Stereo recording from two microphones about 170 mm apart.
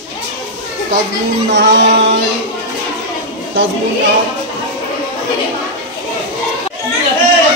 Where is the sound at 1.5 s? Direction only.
90° right.